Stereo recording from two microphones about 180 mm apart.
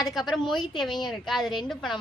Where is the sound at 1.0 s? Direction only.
Centre (ahead or behind).